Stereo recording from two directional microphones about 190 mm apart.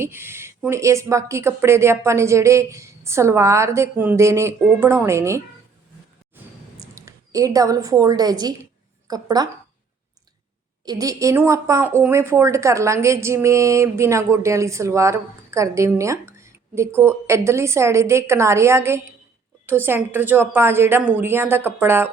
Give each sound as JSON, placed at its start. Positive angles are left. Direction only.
{"t": 0.0, "sound": "a woman's voice", "side_deg": -15}
{"t": 6.3, "sound": "a sound", "side_deg": -15}
{"t": 9.0, "sound": "speech", "side_deg": -20}
{"t": 10.8, "sound": "a woman's voice", "side_deg": -20}